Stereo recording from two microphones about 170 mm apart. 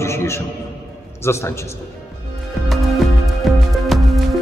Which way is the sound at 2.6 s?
Centre (ahead or behind).